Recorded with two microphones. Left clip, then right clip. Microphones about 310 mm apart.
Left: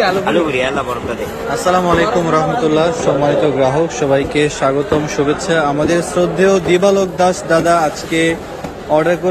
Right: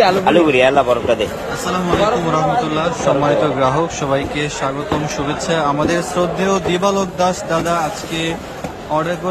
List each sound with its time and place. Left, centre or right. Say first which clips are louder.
0.0 s a man's voice: right 2 dB; right
1.7 s a man's voice: left 3 dB; centre